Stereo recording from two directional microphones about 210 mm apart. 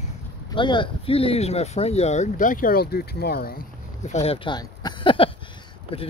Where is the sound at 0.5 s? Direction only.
25° left (ahead or behind); by 3.6 s 45° left (ahead or behind).